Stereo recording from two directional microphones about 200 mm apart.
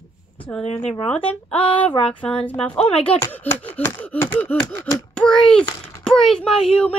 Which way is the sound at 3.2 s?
10° left (ahead or behind).